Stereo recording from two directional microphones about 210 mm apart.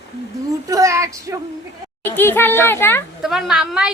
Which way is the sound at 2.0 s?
10° left (ahead or behind).